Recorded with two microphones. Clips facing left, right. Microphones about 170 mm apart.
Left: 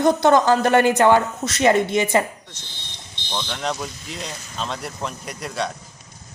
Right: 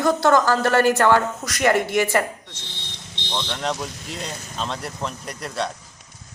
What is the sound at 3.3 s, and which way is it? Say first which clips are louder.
Speech: even; centre (ahead or behind).